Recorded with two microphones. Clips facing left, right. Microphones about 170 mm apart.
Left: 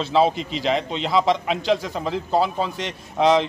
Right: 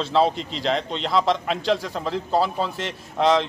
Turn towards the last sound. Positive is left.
turn(degrees=0)  # may be behind; listen again after turning